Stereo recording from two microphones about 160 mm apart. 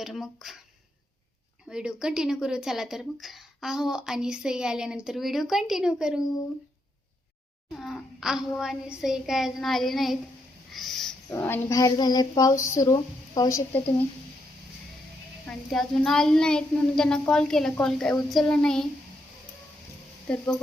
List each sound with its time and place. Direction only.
0.0 s a woman's voice: centre (ahead or behind)
1.7 s a woman's voice: 5° right (ahead or behind)
7.7 s a woman's voice: centre (ahead or behind); by 13.6 s 25° left (ahead or behind)
15.4 s a woman's voice: 5° left (ahead or behind)
20.2 s speech: 10° left (ahead or behind)